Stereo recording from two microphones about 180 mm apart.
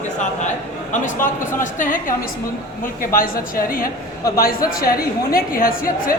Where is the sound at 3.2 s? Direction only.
55° left (ahead or behind).